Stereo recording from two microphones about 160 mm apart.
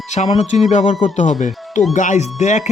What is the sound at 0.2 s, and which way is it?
Speech, 45° left (ahead or behind).